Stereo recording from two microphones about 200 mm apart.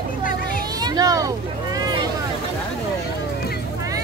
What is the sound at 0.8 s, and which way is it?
Vehicle, 20° right (ahead or behind).